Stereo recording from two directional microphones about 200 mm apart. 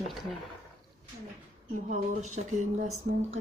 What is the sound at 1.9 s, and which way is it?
Speech, 40° right (ahead or behind).